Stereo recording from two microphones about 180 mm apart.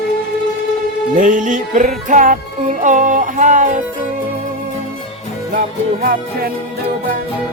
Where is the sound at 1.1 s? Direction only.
45° right (ahead or behind).